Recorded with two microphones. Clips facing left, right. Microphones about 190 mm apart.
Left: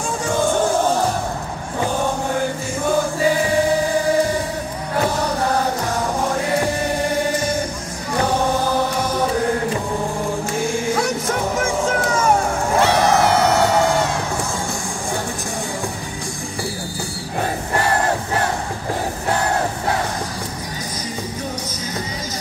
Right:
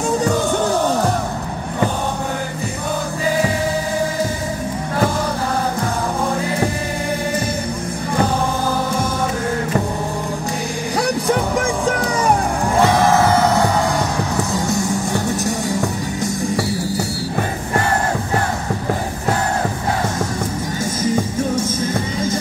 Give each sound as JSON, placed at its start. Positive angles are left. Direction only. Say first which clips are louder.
{"t": 12.8, "sound": "crowd", "louder": "right 2 dB", "side_deg": 70}